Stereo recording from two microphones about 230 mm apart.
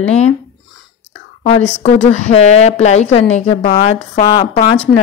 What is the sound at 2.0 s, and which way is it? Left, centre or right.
Speech, left.